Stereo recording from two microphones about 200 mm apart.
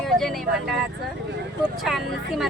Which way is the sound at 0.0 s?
Centre (ahead or behind).